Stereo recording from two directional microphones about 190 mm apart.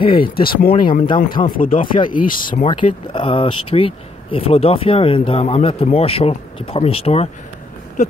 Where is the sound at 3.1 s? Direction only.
25° left (ahead or behind).